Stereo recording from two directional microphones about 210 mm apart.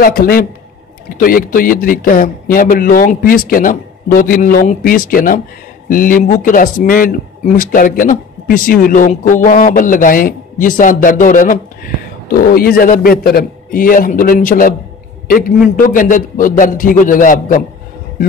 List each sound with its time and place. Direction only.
0.0 s a man's voice: 45° left (ahead or behind)